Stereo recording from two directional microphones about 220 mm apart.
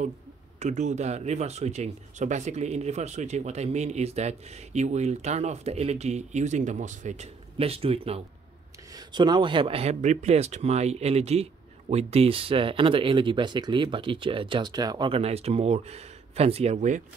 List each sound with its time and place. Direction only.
0.6 s speech: 30° right (ahead or behind)